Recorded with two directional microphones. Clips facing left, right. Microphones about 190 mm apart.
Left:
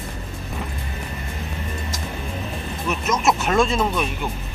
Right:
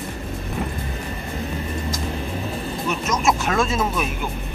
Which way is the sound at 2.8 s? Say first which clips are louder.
Left 1 dB; centre (ahead or behind).